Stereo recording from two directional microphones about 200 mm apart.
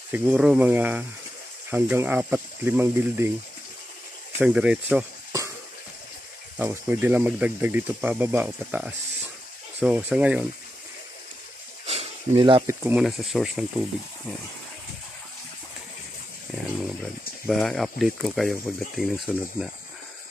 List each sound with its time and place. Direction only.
0.1 s speech: 5° right (ahead or behind)
4.4 s speech: 5° right (ahead or behind)
6.6 s speech: 10° right (ahead or behind)
11.8 s snake: 30° right (ahead or behind)
12.6 s speech: 5° right (ahead or behind)
17.5 s speech: centre (ahead or behind)